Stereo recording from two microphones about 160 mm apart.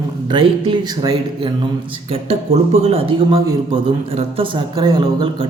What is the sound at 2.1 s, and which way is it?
Speech, 40° right (ahead or behind).